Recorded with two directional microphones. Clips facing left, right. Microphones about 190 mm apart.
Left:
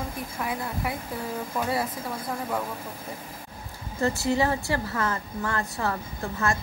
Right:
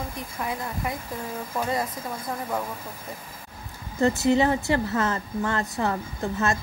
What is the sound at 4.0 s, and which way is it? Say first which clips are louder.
Speech: right 4 dB; 20° right (ahead or behind).